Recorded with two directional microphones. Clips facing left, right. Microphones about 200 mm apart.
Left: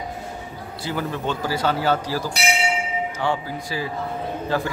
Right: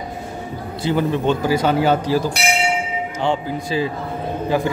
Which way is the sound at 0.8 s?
20° right (ahead or behind).